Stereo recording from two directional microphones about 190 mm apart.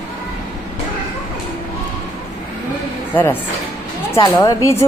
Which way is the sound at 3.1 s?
10° left (ahead or behind).